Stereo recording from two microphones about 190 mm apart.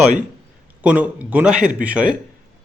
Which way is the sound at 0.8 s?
10° right (ahead or behind).